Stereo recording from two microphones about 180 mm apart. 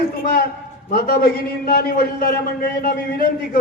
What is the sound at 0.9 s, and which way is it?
A man's voice, 55° left (ahead or behind).